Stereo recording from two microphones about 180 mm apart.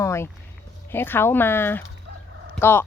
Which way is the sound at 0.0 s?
15° left (ahead or behind).